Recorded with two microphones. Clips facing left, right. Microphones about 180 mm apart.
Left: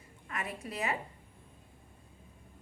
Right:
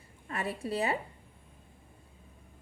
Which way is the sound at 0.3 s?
30° right (ahead or behind).